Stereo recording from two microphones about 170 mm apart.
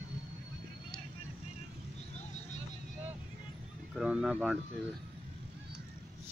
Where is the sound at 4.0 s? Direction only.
5° right (ahead or behind).